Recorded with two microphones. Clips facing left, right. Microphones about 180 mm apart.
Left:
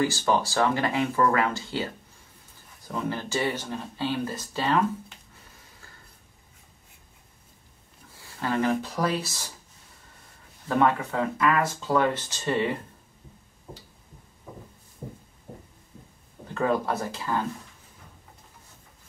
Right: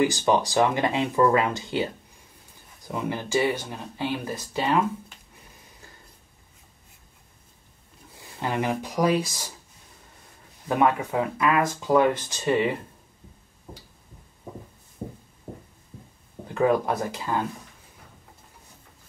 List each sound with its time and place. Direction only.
0.0 s speech: 15° right (ahead or behind)
2.9 s speech: 15° right (ahead or behind)
8.2 s speech: 20° right (ahead or behind)
10.7 s speech: 15° right (ahead or behind)
16.5 s speech: 15° right (ahead or behind)